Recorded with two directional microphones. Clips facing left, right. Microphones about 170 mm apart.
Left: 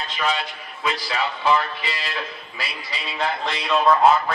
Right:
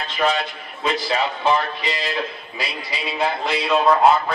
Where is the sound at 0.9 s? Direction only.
20° right (ahead or behind).